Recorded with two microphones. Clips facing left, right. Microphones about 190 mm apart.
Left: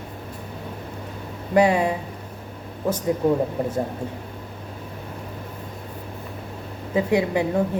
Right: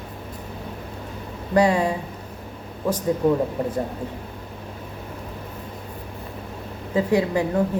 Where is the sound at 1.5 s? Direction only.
20° left (ahead or behind).